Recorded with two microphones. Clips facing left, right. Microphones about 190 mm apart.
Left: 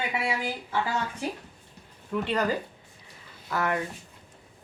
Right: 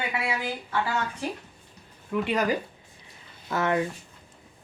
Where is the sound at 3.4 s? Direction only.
25° right (ahead or behind).